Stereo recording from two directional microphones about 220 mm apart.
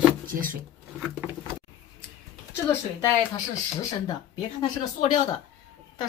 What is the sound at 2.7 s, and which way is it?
Speech, 15° left (ahead or behind).